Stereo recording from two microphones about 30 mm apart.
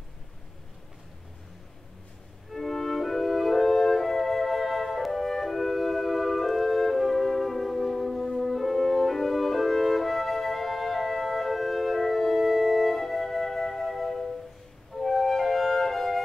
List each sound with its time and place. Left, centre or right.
2.5 s music: centre